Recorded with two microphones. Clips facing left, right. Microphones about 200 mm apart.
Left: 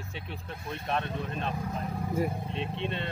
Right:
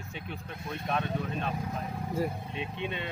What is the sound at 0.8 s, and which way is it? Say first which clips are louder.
Speech: right 1 dB; 5° right (ahead or behind).